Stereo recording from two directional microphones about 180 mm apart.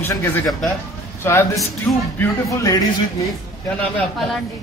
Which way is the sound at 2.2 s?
20° left (ahead or behind).